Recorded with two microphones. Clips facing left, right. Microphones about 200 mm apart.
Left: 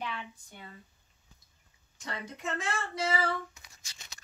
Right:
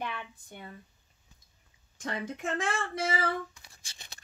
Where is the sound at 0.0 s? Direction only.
55° right (ahead or behind).